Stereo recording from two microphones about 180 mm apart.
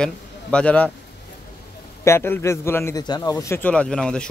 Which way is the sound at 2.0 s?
15° left (ahead or behind).